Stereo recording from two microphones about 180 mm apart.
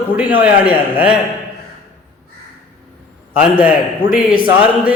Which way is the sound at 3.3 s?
10° right (ahead or behind).